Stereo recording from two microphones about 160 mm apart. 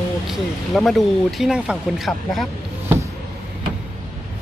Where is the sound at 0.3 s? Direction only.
Centre (ahead or behind).